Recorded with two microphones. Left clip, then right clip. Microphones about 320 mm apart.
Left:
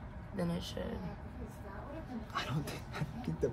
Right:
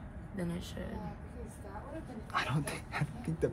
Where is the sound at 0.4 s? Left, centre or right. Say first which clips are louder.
Left 3 dB; left.